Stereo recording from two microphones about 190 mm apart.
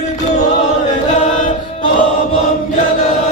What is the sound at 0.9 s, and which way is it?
Chant, 40° left (ahead or behind).